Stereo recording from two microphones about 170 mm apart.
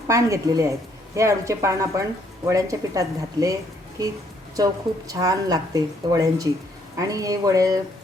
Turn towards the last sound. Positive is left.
turn(degrees=-20)  # may be behind; listen again after turning